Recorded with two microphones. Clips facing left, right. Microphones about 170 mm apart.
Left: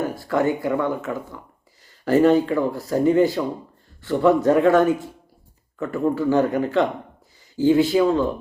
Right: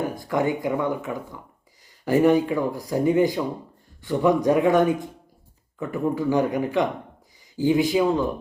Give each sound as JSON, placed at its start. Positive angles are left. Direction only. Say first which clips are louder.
{"t": 0.0, "sound": "speech", "louder": "left 2 dB", "side_deg": -15}